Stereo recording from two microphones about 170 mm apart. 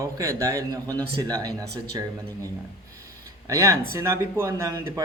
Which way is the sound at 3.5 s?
20° right (ahead or behind).